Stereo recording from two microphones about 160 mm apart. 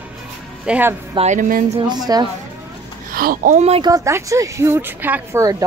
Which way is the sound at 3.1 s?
65° right (ahead or behind).